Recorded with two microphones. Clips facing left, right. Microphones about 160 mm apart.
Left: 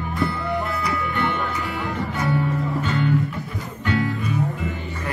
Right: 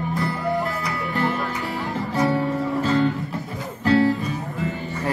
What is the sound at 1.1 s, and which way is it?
Music, 35° right (ahead or behind).